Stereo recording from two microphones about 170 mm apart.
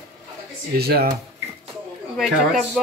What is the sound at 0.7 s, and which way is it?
Speech, 65° right (ahead or behind).